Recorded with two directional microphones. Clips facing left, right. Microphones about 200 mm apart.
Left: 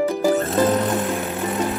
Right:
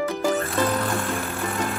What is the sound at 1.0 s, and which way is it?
Music, 5° left (ahead or behind).